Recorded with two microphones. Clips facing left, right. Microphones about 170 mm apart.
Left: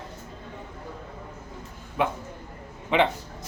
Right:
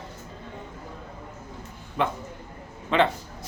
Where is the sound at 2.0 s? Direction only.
10° left (ahead or behind).